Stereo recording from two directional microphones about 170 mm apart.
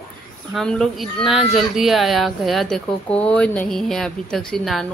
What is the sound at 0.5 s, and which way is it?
Speech, centre (ahead or behind).